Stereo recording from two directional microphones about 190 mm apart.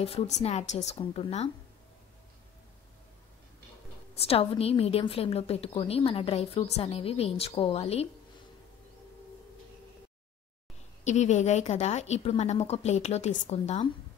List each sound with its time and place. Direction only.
0.0 s a woman's voice: 30° left (ahead or behind)
4.1 s a woman's voice: 30° left (ahead or behind)
11.1 s a woman's voice: 35° left (ahead or behind)